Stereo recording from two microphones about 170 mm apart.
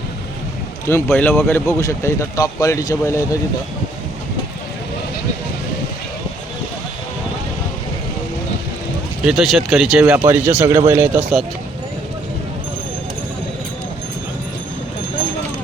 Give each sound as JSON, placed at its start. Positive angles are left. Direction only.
{"t": 0.9, "sound": "speech", "side_deg": 15}
{"t": 9.2, "sound": "speech", "side_deg": 0}